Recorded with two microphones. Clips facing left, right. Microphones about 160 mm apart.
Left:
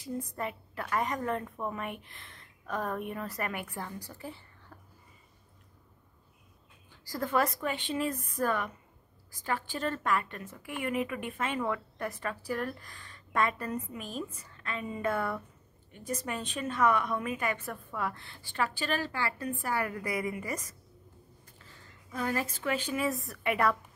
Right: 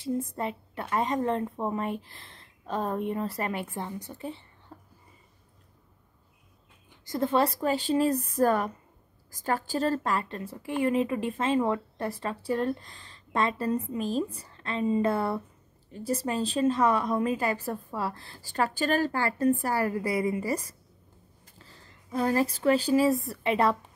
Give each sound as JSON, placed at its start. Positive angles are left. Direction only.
{"t": 0.0, "sound": "a woman's voice", "side_deg": -25}
{"t": 6.9, "sound": "a woman's voice", "side_deg": -25}